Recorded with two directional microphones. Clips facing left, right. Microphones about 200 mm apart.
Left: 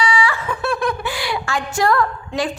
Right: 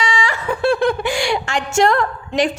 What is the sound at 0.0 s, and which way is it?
Snicker, 25° right (ahead or behind).